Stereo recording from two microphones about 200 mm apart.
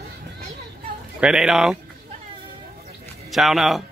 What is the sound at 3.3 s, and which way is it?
Speech, centre (ahead or behind).